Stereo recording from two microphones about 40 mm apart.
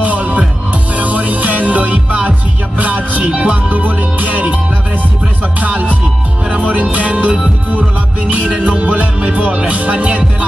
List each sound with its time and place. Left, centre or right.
0.0 s music: right
3.3 s music: right
3.7 s music: right
5.6 s music: right